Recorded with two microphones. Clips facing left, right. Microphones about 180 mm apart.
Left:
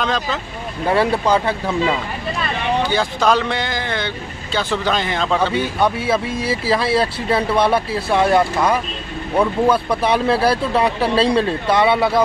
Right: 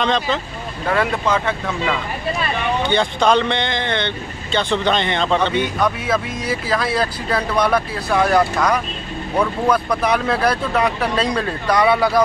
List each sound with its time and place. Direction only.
0.0 s speech: 5° left (ahead or behind)
0.8 s speech: 30° left (ahead or behind)
2.8 s speech: 5° left (ahead or behind)
5.8 s speech: 30° left (ahead or behind)